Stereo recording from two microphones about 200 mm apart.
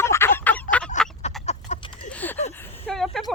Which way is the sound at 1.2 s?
35° left (ahead or behind).